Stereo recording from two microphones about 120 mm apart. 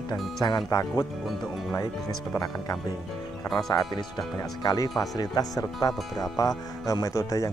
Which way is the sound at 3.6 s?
30° left (ahead or behind).